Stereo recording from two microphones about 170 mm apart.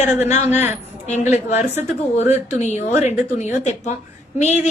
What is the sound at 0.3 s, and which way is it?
A man's voice, 45° left (ahead or behind).